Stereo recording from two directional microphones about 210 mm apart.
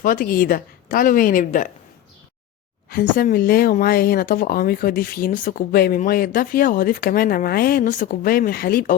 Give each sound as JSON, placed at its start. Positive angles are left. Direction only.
{"t": 0.0, "sound": "a woman's voice", "side_deg": 40}
{"t": 2.9, "sound": "speech", "side_deg": 45}